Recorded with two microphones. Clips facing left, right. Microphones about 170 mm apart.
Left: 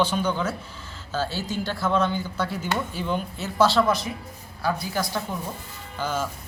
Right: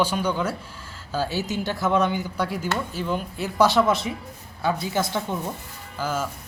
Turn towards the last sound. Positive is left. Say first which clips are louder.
# even
turn(degrees=-10)  # may be behind; listen again after turning